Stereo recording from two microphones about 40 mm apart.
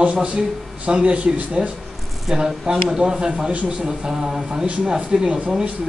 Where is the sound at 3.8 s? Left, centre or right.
Centre.